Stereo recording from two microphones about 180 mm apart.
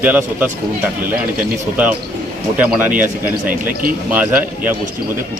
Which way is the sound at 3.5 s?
55° right (ahead or behind).